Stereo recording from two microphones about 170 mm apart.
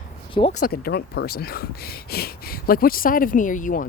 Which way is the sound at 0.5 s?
60° left (ahead or behind).